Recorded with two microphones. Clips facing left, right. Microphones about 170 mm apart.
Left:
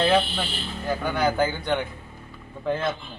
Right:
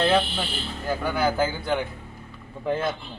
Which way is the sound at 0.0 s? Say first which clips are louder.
Even; centre (ahead or behind).